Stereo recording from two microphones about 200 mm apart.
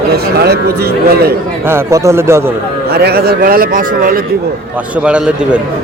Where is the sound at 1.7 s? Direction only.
15° right (ahead or behind).